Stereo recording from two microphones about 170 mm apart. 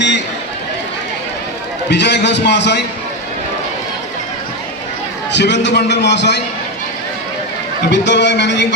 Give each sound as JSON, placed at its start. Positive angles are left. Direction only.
{"t": 1.9, "sound": "a man's voice", "side_deg": 90}
{"t": 5.3, "sound": "a man's voice", "side_deg": 90}
{"t": 7.9, "sound": "a man's voice", "side_deg": 90}